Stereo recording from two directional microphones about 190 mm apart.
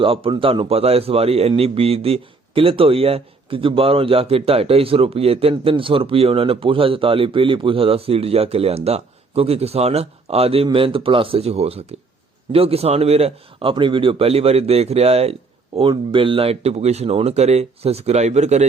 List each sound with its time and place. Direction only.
0.0 s speech: 25° right (ahead or behind)